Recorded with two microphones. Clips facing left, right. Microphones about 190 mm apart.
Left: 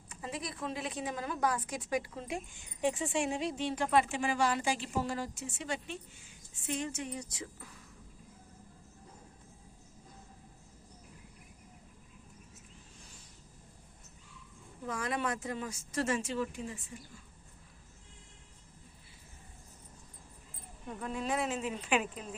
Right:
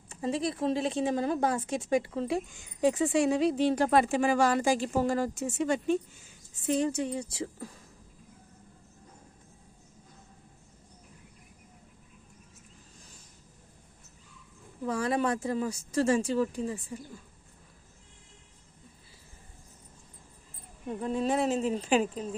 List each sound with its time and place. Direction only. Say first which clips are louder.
0.1 s a woman's voice: right 10 dB; 30° right (ahead or behind)
3.4 s speech: right 9 dB; 35° right (ahead or behind)
6.7 s speech: right 9 dB; 35° right (ahead or behind)
14.8 s speech: right 7 dB; 35° right (ahead or behind)
20.8 s speech: right 7 dB; 30° right (ahead or behind)